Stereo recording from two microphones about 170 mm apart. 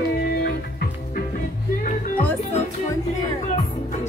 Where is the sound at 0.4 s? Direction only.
65° left (ahead or behind).